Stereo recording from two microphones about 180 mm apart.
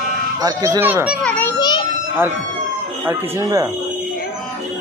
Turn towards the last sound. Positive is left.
turn(degrees=-15)  # may be behind; listen again after turning